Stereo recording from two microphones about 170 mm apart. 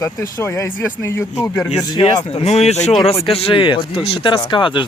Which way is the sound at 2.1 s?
35° left (ahead or behind).